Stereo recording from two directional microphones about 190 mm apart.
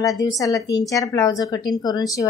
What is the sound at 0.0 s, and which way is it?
A woman's voice, 20° left (ahead or behind).